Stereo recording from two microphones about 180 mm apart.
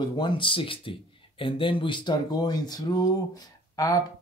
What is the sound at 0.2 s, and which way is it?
Speech, 30° left (ahead or behind).